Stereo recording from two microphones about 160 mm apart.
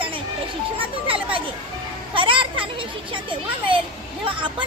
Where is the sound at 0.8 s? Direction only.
35° right (ahead or behind).